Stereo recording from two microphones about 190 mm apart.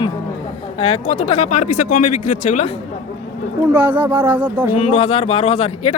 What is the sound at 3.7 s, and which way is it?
Speech, 10° right (ahead or behind).